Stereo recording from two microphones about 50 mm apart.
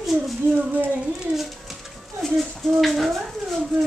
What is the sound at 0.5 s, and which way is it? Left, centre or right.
Speech, right.